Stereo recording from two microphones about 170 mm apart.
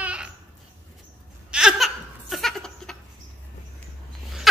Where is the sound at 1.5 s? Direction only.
Centre (ahead or behind).